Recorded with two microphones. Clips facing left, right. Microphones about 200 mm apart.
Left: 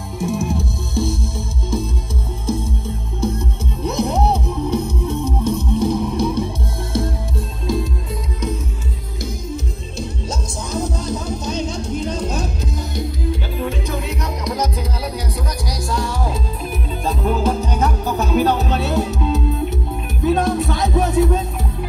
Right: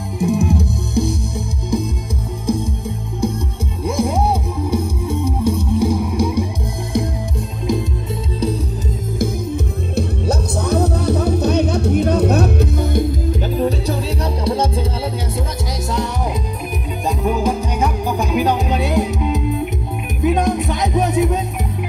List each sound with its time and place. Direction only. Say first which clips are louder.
0.2 s music: right 4 dB; 15° right (ahead or behind)
9.9 s music: right 8 dB; 60° right (ahead or behind); by 14.9 s 30° right (ahead or behind)
17.2 s music: even; 10° right (ahead or behind)